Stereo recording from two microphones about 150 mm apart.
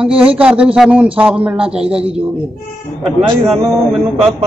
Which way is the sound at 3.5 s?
Centre (ahead or behind).